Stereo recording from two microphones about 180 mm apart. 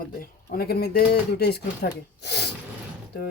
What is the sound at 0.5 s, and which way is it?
Speech, 60° left (ahead or behind).